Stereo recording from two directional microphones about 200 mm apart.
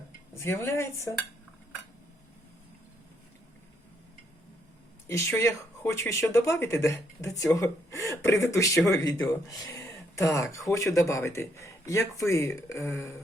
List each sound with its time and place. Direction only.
0.4 s speech: 15° left (ahead or behind)
5.0 s speech: 10° left (ahead or behind)